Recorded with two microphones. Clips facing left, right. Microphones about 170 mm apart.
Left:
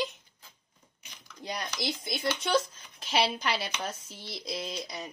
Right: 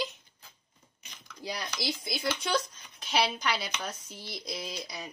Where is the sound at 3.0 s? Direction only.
Centre (ahead or behind).